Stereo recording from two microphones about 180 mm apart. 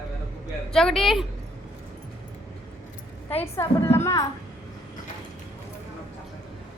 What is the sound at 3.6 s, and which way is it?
Speech, 15° left (ahead or behind).